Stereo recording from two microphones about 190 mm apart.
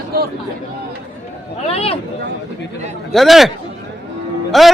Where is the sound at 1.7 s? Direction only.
30° left (ahead or behind).